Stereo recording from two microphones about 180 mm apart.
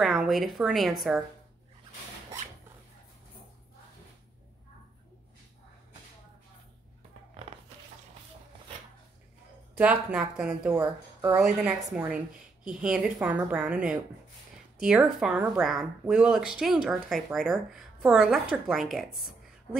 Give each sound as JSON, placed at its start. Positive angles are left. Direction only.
{"t": 0.0, "sound": "speech", "side_deg": 0}
{"t": 9.8, "sound": "speech", "side_deg": -5}
{"t": 10.7, "sound": "speech", "side_deg": -20}
{"t": 11.3, "sound": "speech", "side_deg": -5}